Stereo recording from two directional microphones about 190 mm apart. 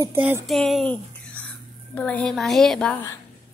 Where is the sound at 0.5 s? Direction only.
Centre (ahead or behind).